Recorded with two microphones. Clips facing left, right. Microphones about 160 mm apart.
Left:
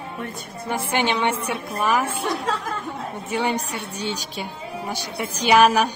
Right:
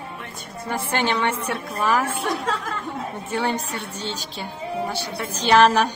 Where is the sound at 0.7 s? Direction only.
15° left (ahead or behind).